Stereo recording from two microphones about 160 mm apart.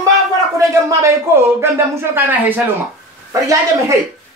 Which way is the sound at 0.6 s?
20° right (ahead or behind).